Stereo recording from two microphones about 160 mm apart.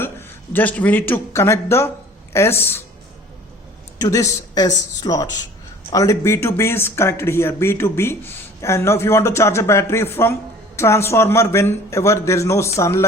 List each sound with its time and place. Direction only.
0.0 s a man's voice: 10° left (ahead or behind)
3.9 s speech: 20° left (ahead or behind)